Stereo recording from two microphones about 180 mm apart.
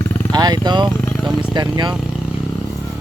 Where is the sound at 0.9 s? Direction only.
5° left (ahead or behind).